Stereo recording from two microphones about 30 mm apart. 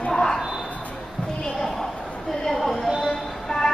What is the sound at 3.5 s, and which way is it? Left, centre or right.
Music, centre.